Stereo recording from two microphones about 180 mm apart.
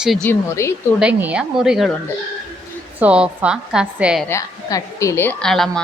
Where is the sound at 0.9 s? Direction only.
5° right (ahead or behind).